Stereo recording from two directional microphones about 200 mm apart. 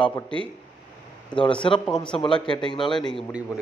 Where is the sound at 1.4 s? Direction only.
25° left (ahead or behind).